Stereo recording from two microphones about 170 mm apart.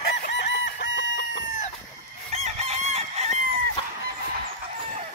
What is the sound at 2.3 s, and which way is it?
Chicken, 40° right (ahead or behind).